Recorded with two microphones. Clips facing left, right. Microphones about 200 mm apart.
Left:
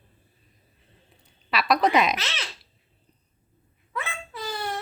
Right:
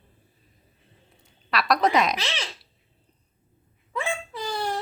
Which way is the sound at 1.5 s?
Centre (ahead or behind).